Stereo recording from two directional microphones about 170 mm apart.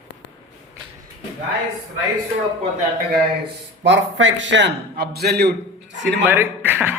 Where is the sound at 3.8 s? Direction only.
90° right; by 5.5 s 70° right (ahead or behind).